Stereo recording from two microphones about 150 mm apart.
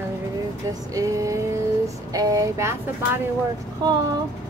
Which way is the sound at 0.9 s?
20° right (ahead or behind).